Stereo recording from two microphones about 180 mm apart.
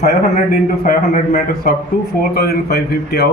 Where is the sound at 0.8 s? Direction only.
55° left (ahead or behind).